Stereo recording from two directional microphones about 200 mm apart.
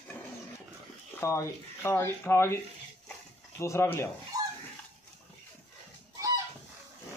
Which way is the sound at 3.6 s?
15° left (ahead or behind).